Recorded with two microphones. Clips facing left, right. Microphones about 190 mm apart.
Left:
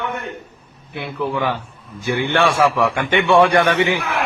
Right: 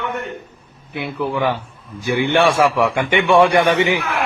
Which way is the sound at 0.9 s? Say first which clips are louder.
Right 1 dB; 15° right (ahead or behind).